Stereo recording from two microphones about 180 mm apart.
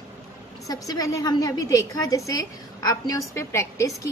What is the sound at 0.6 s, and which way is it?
A woman's voice, 20° left (ahead or behind).